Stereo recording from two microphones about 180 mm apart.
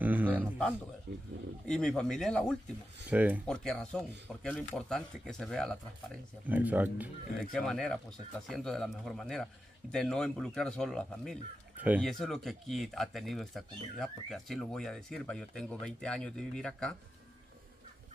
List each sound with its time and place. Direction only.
0.0 s speech: 10° right (ahead or behind)
1.7 s speech: 5° left (ahead or behind)
3.1 s speech: 10° right (ahead or behind)
3.4 s speech: 5° left (ahead or behind)
6.4 s speech: 10° right (ahead or behind)
7.5 s speech: centre (ahead or behind)
11.7 s speech: 10° right (ahead or behind)